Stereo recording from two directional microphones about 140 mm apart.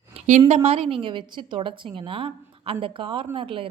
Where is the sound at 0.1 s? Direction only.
50° right (ahead or behind).